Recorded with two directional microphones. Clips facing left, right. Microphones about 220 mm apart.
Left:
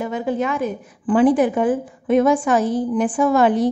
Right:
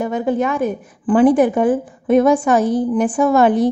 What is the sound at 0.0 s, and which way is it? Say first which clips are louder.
A woman's voice: right 4 dB; 45° right (ahead or behind).